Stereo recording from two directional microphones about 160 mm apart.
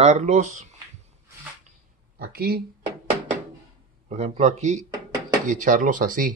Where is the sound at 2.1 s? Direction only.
75° right (ahead or behind).